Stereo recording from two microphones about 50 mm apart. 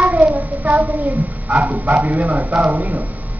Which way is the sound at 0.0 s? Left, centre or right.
Right.